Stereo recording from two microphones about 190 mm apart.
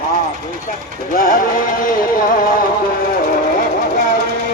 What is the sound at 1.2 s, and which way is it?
Music, 45° left (ahead or behind).